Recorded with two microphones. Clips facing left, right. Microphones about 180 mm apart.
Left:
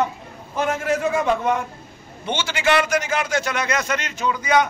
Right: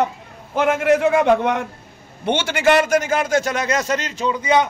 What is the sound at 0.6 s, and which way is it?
A man's voice, 65° right (ahead or behind).